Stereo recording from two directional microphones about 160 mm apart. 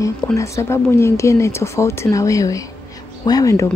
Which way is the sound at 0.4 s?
20° left (ahead or behind).